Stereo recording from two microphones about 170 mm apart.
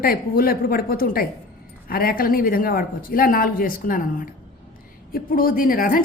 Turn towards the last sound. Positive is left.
turn(degrees=55)  # may be behind; listen again after turning